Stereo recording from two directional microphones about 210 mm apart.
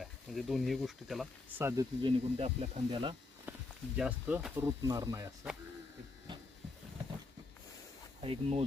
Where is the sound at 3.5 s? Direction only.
10° right (ahead or behind).